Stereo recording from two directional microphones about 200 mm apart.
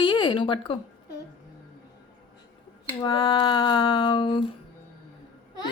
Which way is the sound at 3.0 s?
20° left (ahead or behind).